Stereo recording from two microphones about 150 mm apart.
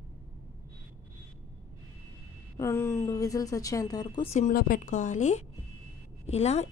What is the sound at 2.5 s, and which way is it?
A woman's voice, 20° left (ahead or behind).